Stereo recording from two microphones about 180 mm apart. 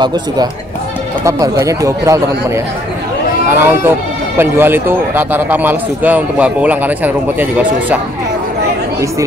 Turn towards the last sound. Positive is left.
turn(degrees=-10)  # may be behind; listen again after turning